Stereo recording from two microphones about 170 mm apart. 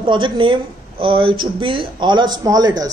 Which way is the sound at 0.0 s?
30° right (ahead or behind).